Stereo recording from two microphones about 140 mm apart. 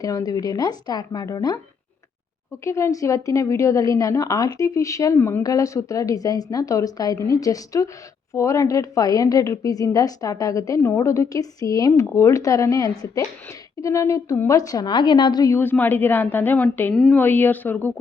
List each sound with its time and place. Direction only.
0.0 s a woman's voice: 25° left (ahead or behind)
2.6 s a woman's voice: 20° left (ahead or behind)
15.5 s a woman's voice: 15° left (ahead or behind)